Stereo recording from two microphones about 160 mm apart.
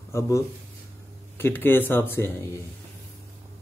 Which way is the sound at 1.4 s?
10° left (ahead or behind).